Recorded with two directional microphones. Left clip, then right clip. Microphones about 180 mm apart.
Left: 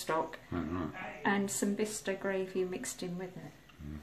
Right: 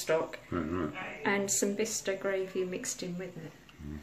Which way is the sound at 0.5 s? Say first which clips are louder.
Right 4 dB; 5° left (ahead or behind).